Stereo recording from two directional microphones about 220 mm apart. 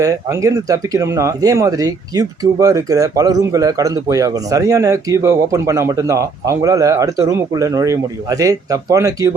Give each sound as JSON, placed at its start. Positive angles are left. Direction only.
{"t": 0.0, "sound": "speech", "side_deg": -15}